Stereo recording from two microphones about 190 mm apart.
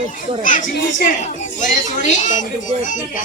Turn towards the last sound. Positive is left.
turn(degrees=45)  # may be behind; listen again after turning